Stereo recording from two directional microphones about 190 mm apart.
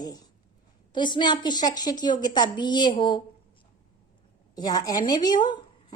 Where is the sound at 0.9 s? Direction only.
25° left (ahead or behind).